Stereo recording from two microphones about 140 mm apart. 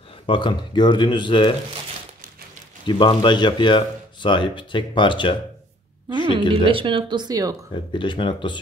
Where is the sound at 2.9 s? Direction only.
35° left (ahead or behind).